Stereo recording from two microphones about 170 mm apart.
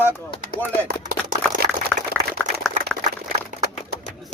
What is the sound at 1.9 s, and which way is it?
Boiling, 5° right (ahead or behind).